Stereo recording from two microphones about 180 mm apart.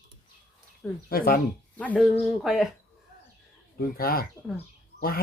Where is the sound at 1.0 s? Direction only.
55° left (ahead or behind).